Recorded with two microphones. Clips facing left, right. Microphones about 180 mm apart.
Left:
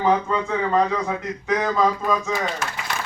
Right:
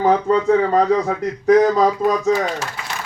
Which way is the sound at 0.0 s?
40° right (ahead or behind).